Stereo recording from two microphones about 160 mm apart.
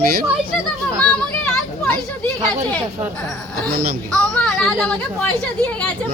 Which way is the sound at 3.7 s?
75° right (ahead or behind).